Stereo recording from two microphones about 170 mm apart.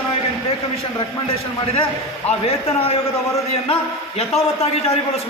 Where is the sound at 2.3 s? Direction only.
40° left (ahead or behind).